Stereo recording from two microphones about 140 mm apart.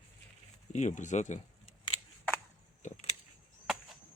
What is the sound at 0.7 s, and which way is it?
Speech, 60° left (ahead or behind).